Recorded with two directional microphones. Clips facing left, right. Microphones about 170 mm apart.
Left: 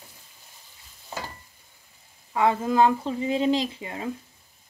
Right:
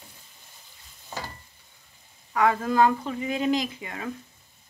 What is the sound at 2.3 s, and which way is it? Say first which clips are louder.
Speech: left 1 dB; 25° left (ahead or behind).